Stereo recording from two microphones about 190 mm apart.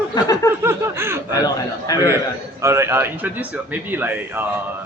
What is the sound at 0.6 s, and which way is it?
Speech, 15° right (ahead or behind).